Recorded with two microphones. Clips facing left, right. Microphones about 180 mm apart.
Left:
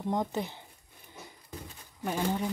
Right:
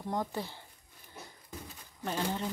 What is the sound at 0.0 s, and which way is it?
Speech, 20° left (ahead or behind).